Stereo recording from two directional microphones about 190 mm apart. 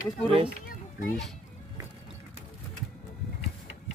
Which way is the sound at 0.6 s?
45° left (ahead or behind).